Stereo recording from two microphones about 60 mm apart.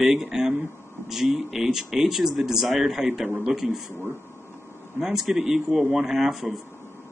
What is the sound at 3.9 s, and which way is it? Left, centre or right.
Speech, right.